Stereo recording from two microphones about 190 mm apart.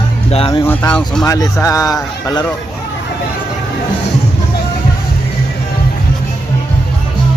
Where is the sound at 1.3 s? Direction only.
15° left (ahead or behind).